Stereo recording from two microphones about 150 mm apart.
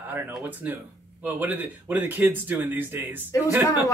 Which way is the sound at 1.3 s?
10° right (ahead or behind).